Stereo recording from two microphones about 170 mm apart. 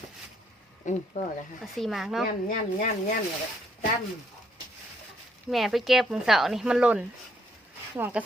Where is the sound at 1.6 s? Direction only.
Centre (ahead or behind).